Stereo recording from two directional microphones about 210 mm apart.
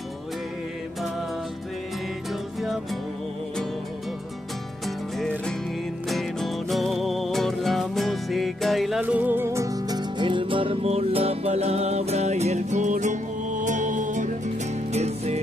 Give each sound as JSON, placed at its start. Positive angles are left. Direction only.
{"t": 2.6, "sound": "music", "side_deg": 0}
{"t": 4.8, "sound": "music", "side_deg": 0}